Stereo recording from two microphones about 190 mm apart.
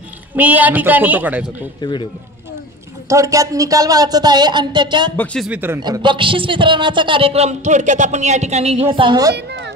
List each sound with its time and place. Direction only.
0.4 s a man's voice: 10° right (ahead or behind)
1.8 s speech: 25° left (ahead or behind)
3.1 s a man's voice: 15° right (ahead or behind)
5.1 s speech: 5° left (ahead or behind)
5.5 s a man's voice: 10° right (ahead or behind)
9.3 s a child's voice: 65° right (ahead or behind)